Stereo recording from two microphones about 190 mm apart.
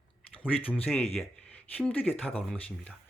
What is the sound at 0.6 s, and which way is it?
Speech, 30° left (ahead or behind).